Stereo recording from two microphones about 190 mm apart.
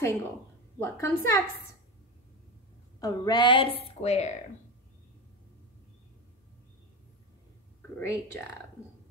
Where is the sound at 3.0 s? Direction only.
20° left (ahead or behind).